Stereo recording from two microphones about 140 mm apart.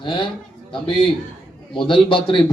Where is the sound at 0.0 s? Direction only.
35° left (ahead or behind).